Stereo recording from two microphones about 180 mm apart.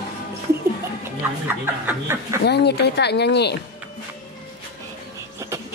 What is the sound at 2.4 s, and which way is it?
Speech, 65° left (ahead or behind).